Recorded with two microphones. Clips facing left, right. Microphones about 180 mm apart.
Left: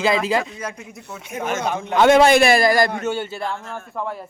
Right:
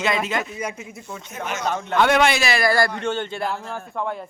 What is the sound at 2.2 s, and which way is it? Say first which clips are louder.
Speech: left 6 dB; 50° left (ahead or behind).